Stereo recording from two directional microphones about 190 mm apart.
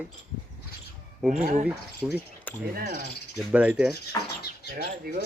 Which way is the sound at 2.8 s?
50° right (ahead or behind).